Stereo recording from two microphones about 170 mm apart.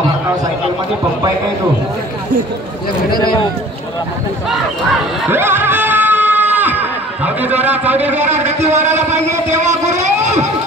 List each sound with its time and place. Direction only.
5.3 s crowd: 15° right (ahead or behind)
7.4 s a man's voice: 10° right (ahead or behind)
8.3 s a man's voice: 40° right (ahead or behind)